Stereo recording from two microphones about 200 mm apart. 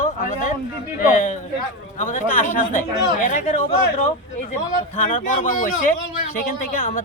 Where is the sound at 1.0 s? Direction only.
40° left (ahead or behind).